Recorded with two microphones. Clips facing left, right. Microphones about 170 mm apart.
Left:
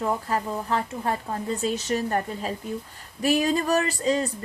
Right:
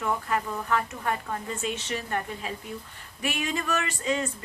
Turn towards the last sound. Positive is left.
turn(degrees=35)  # may be behind; listen again after turning